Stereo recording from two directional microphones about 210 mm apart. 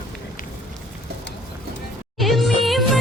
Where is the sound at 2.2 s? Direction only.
Centre (ahead or behind).